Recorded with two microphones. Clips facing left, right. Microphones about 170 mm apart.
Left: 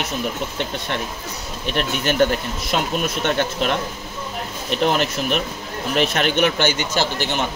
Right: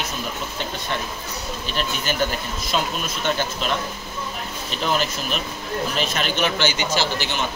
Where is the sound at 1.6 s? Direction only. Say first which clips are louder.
Left 6 dB; 65° left (ahead or behind).